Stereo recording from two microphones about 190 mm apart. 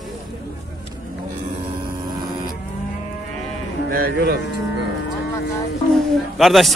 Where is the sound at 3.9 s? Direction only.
50° right (ahead or behind).